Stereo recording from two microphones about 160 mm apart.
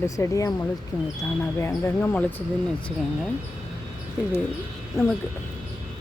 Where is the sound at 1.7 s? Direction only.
10° left (ahead or behind).